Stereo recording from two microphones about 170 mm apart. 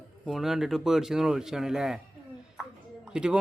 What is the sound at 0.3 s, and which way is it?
Speech, centre (ahead or behind).